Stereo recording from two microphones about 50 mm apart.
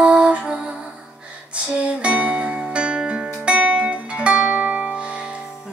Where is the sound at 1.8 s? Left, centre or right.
Right.